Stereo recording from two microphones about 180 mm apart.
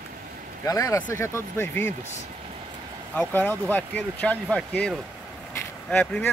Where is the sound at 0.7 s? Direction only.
20° left (ahead or behind).